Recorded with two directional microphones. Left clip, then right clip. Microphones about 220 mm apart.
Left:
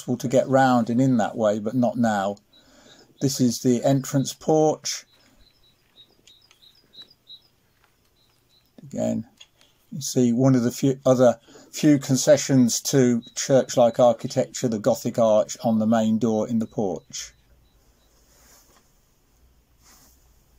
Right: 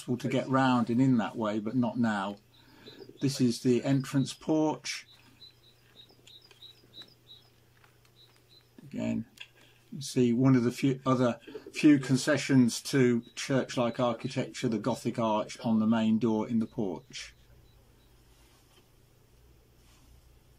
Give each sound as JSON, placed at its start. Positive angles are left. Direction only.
{"t": 0.0, "sound": "speech", "side_deg": 40}
{"t": 8.8, "sound": "a man's voice", "side_deg": 40}